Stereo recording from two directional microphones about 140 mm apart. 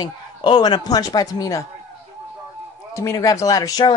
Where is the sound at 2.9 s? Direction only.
25° left (ahead or behind).